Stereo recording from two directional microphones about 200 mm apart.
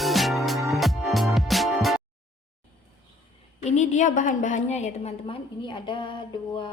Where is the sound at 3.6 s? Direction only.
35° left (ahead or behind).